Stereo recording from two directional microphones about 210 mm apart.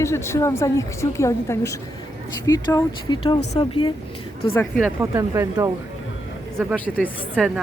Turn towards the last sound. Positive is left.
turn(degrees=-5)  # may be behind; listen again after turning